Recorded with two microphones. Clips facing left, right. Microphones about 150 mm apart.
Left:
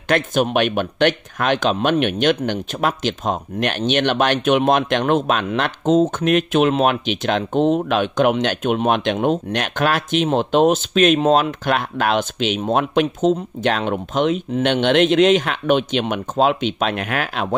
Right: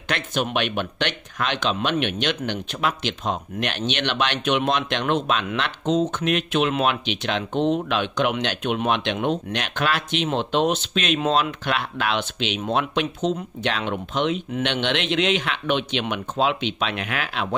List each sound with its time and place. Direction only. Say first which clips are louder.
0.1 s speech: left 7 dB; 45° left (ahead or behind)